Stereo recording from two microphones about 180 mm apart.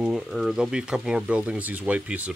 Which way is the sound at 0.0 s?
Centre (ahead or behind).